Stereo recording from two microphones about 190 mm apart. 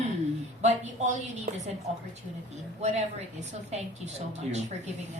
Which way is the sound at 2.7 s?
35° right (ahead or behind).